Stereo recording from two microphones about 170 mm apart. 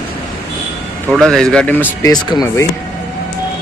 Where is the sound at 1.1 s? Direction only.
5° left (ahead or behind).